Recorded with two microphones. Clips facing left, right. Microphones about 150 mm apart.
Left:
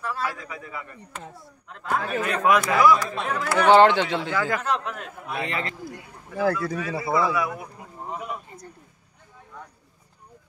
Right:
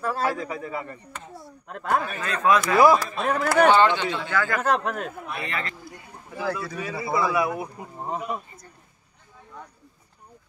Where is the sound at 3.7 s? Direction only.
85° left.